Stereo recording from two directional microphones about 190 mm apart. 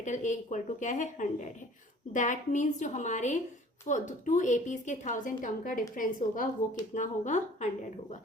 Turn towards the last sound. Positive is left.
turn(degrees=40)  # may be behind; listen again after turning